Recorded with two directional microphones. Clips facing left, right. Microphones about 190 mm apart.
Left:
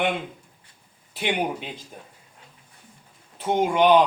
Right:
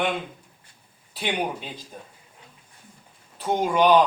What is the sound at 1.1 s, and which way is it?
Speech, 20° left (ahead or behind).